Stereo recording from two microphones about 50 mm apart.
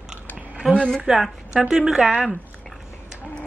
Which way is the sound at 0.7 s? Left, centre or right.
Centre.